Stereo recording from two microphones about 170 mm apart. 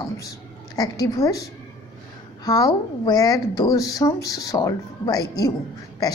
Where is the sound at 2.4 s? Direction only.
25° left (ahead or behind).